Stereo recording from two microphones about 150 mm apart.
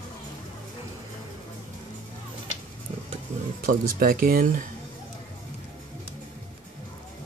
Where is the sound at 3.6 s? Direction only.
70° right (ahead or behind).